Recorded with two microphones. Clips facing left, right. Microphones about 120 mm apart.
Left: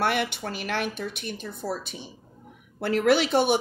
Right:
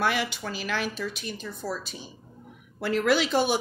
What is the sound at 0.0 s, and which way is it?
A woman's voice, 55° left (ahead or behind).